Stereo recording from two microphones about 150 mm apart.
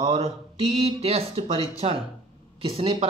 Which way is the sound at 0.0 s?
45° right (ahead or behind).